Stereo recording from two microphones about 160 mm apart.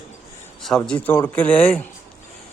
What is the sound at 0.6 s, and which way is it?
Speech, 5° left (ahead or behind).